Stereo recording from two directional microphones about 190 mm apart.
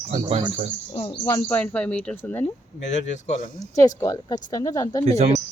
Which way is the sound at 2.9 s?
40° left (ahead or behind).